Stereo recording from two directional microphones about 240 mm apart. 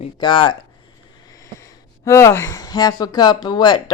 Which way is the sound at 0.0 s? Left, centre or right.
Centre.